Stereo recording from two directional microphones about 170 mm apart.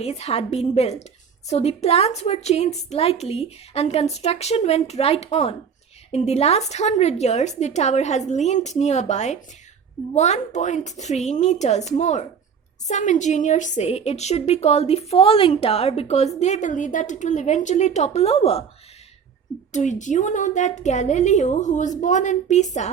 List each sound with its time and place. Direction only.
0.0 s a woman's voice: 40° left (ahead or behind)
19.7 s a woman's voice: 45° left (ahead or behind)